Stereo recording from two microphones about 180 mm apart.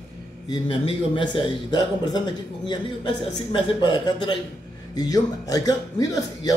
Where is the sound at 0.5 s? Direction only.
25° left (ahead or behind).